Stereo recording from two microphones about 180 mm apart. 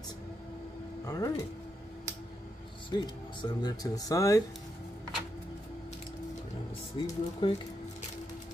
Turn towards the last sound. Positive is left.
turn(degrees=30)  # may be behind; listen again after turning